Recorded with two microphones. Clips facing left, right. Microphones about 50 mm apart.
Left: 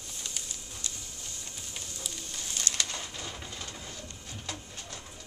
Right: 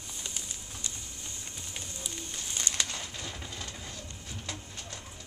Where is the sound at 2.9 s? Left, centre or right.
Centre.